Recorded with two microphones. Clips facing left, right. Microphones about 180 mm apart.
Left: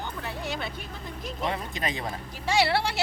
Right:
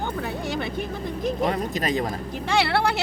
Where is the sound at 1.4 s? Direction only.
40° right (ahead or behind).